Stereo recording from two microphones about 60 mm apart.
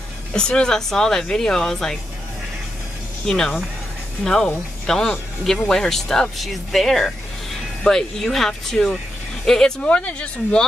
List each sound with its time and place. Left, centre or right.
0.3 s speech: centre
3.3 s speech: centre